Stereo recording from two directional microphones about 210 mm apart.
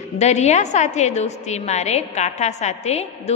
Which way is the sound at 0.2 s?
30° left (ahead or behind).